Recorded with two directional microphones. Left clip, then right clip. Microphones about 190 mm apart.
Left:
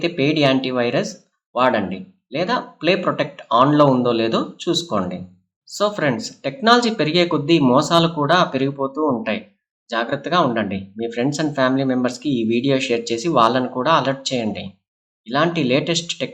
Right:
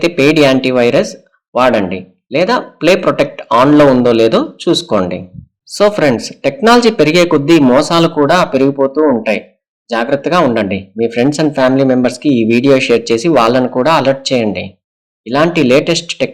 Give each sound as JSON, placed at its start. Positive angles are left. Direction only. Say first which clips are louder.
{"t": 0.0, "sound": "speech", "louder": "right 9 dB", "side_deg": -35}